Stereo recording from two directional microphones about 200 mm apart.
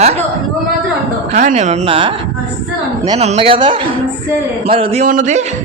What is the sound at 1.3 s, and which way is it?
Speech, 35° right (ahead or behind).